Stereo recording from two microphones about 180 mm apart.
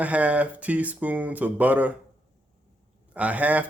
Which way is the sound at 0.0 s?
10° right (ahead or behind).